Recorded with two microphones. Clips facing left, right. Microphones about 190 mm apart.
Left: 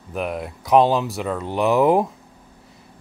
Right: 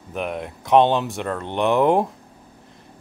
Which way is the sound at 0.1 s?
Centre (ahead or behind).